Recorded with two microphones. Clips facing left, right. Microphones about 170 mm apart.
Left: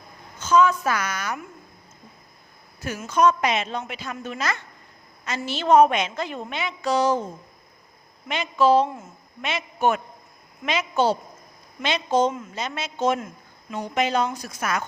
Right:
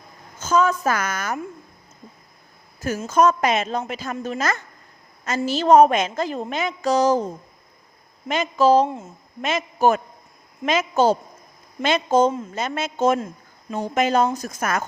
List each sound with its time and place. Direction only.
0.3 s a woman's voice: 45° right (ahead or behind)
3.1 s a woman's voice: 45° right (ahead or behind)
8.3 s a woman's voice: 40° right (ahead or behind)